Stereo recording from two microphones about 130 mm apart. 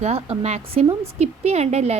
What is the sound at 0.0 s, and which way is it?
A woman's voice, 55° right (ahead or behind).